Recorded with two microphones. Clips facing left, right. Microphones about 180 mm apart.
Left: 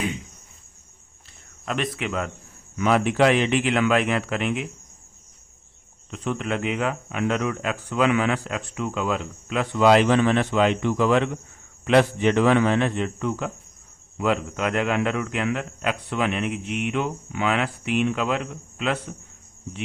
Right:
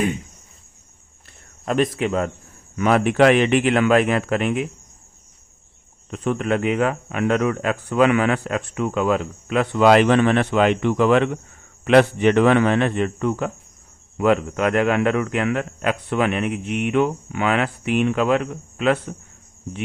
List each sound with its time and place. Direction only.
1.6 s speech: 40° right (ahead or behind)
2.7 s a man's voice: 55° right (ahead or behind)
6.1 s a man's voice: 45° right (ahead or behind)